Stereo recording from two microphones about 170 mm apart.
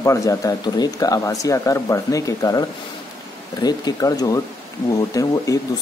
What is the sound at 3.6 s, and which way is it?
Speech, 20° left (ahead or behind).